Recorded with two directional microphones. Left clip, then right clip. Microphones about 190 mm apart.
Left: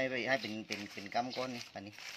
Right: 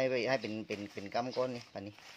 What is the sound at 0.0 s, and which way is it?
Speech, 50° right (ahead or behind).